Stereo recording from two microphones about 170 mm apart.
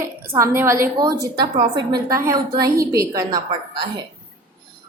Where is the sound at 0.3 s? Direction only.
15° right (ahead or behind).